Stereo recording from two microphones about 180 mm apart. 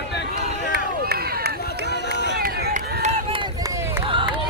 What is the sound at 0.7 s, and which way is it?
Run, 60° right (ahead or behind).